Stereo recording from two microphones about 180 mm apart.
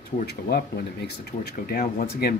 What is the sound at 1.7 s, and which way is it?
Speech, 55° left (ahead or behind).